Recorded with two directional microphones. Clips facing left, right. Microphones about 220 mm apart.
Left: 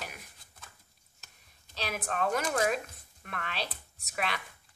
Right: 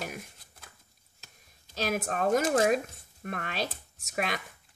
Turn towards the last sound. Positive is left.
turn(degrees=-45)  # may be behind; listen again after turning